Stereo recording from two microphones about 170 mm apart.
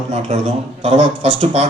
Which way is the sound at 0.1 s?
45° right (ahead or behind).